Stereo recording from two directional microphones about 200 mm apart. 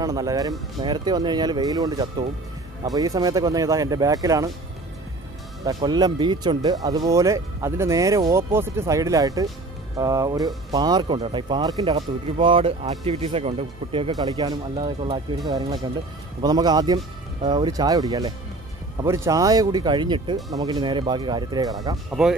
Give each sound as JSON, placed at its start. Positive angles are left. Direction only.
{"t": 0.0, "sound": "speech", "side_deg": -15}
{"t": 5.7, "sound": "speech", "side_deg": -20}